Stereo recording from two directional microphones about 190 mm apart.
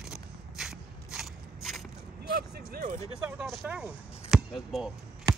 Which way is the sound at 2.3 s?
50° right (ahead or behind).